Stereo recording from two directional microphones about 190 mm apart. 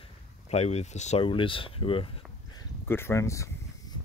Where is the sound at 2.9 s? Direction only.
15° left (ahead or behind).